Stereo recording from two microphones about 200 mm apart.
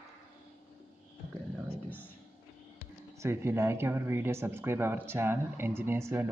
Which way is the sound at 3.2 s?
15° right (ahead or behind).